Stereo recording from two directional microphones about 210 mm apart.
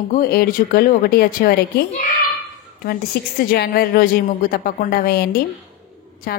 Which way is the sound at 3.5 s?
45° left (ahead or behind).